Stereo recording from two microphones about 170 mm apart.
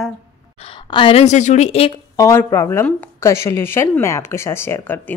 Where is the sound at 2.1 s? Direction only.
15° left (ahead or behind).